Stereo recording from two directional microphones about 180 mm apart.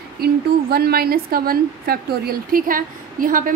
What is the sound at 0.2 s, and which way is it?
A woman's voice, 60° right (ahead or behind).